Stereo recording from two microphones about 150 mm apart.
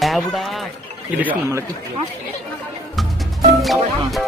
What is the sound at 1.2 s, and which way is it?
Speech, 10° right (ahead or behind).